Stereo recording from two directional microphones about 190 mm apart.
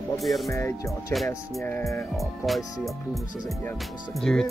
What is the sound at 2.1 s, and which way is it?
Speech, centre (ahead or behind).